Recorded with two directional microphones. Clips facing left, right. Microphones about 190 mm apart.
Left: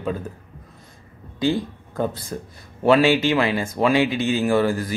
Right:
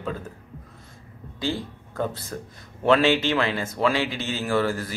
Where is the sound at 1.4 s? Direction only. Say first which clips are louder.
Left 7 dB; 15° left (ahead or behind).